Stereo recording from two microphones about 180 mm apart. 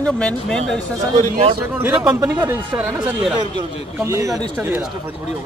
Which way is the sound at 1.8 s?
5° right (ahead or behind).